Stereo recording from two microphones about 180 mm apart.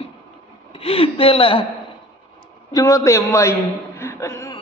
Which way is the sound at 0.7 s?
30° left (ahead or behind).